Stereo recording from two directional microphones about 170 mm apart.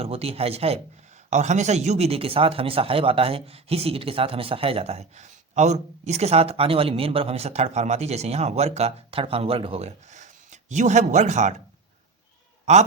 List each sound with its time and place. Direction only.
0.0 s speech: 35° right (ahead or behind)
12.7 s speech: 40° right (ahead or behind)